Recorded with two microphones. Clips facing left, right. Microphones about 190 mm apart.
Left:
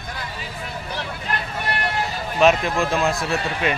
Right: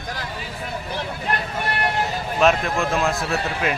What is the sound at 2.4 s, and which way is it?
A man's voice, centre (ahead or behind).